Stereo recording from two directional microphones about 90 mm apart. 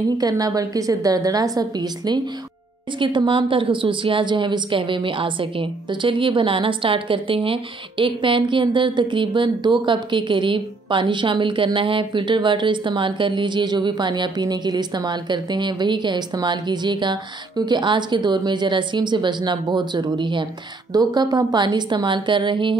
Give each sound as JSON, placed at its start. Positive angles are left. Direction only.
{"t": 0.2, "sound": "a woman's voice", "side_deg": -40}
{"t": 3.0, "sound": "a woman's voice", "side_deg": -65}
{"t": 20.9, "sound": "a woman's voice", "side_deg": -45}